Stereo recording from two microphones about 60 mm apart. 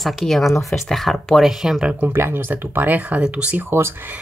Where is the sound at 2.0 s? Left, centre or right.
Right.